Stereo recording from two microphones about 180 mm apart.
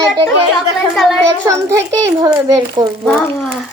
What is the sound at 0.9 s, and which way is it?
Speech, centre (ahead or behind).